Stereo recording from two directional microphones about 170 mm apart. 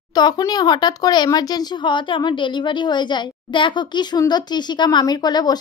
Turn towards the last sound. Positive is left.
turn(degrees=25)  # may be behind; listen again after turning